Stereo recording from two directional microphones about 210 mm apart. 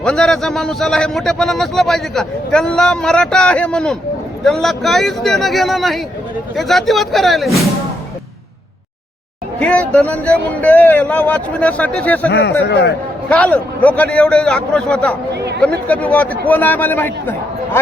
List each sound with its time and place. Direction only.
0.0 s a man's voice: 5° left (ahead or behind)
9.6 s speech: 5° left (ahead or behind)
12.3 s a man's voice: 55° left (ahead or behind)
13.3 s a man's voice: 5° left (ahead or behind)
15.4 s chatter: 50° right (ahead or behind)
15.9 s speech: 5° left (ahead or behind)